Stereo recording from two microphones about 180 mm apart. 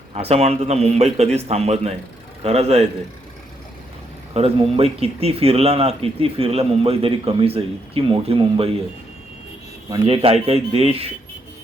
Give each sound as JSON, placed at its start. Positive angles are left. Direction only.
{"t": 0.1, "sound": "speech", "side_deg": -35}
{"t": 4.4, "sound": "speech", "side_deg": -30}
{"t": 9.9, "sound": "speech", "side_deg": -30}